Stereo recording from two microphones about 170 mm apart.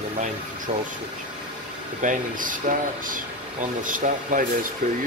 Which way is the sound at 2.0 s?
50° right (ahead or behind).